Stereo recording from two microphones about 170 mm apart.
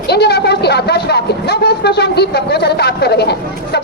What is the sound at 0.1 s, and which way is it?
Vehicle, 75° left (ahead or behind).